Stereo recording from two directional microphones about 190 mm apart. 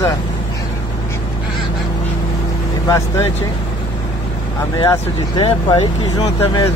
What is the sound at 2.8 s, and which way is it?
Speech, 15° left (ahead or behind).